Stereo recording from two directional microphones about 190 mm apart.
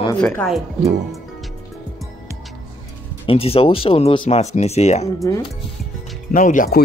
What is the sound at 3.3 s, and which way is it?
Speech, 30° left (ahead or behind).